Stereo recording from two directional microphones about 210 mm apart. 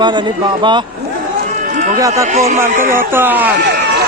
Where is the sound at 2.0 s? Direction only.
15° right (ahead or behind).